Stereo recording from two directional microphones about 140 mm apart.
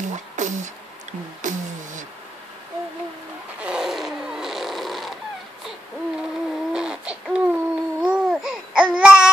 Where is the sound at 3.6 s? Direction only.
5° right (ahead or behind).